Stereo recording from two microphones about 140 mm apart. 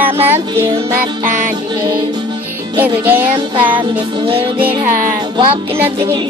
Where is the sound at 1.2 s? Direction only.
65° right (ahead or behind).